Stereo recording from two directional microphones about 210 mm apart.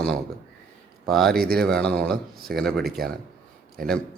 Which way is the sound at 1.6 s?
5° left (ahead or behind).